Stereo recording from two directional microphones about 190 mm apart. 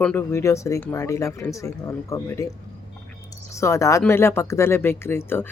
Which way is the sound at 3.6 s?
15° left (ahead or behind).